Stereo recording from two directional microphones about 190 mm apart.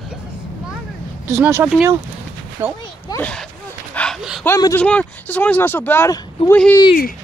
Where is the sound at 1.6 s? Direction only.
5° right (ahead or behind).